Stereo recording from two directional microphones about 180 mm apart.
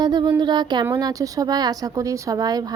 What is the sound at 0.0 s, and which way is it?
Speech, 25° right (ahead or behind).